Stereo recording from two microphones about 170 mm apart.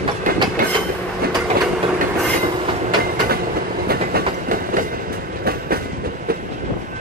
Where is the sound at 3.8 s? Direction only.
65° right (ahead or behind).